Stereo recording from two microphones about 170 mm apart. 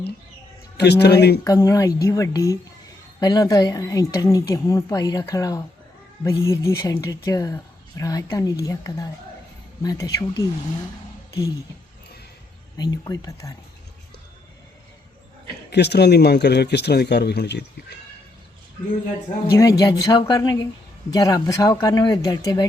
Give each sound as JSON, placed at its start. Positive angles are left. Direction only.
{"t": 0.8, "sound": "speech", "side_deg": 75}
{"t": 1.5, "sound": "speech", "side_deg": 20}
{"t": 12.7, "sound": "speech", "side_deg": 20}
{"t": 15.7, "sound": "speech", "side_deg": 75}
{"t": 19.5, "sound": "speech", "side_deg": 20}